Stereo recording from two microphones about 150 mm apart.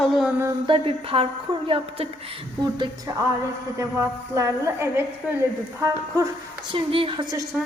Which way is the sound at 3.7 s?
20° right (ahead or behind).